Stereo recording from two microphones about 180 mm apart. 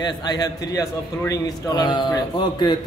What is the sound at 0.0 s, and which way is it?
A man's voice, 20° left (ahead or behind).